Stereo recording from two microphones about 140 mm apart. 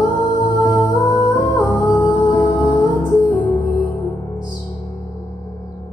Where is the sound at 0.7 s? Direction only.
10° left (ahead or behind).